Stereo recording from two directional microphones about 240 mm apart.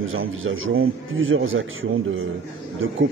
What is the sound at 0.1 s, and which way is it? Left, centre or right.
A man's voice, right.